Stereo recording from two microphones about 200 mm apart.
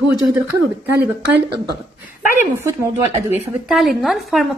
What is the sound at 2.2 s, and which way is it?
Speech, 40° left (ahead or behind).